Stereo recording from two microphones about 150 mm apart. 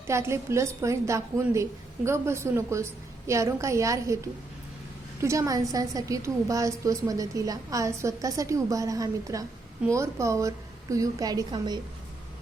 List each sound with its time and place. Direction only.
0.1 s a woman's voice: 20° right (ahead or behind)
5.2 s a woman's voice: 20° right (ahead or behind)